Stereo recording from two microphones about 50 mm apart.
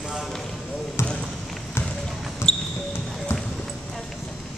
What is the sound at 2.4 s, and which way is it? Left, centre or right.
Basketball bounce, left.